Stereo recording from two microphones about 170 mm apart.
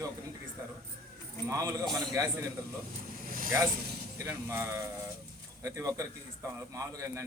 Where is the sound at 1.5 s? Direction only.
20° right (ahead or behind).